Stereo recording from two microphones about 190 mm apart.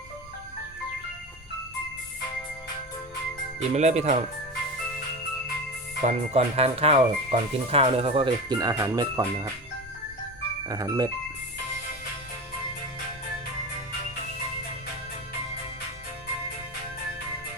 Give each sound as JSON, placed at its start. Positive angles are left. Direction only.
{"t": 3.8, "sound": "speech", "side_deg": -35}
{"t": 6.1, "sound": "speech", "side_deg": -30}
{"t": 10.7, "sound": "speech", "side_deg": -20}